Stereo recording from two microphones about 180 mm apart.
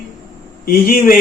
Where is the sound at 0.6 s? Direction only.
55° left (ahead or behind).